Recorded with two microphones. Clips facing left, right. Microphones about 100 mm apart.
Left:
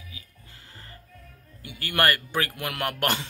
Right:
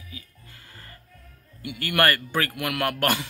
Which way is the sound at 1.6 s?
25° left (ahead or behind).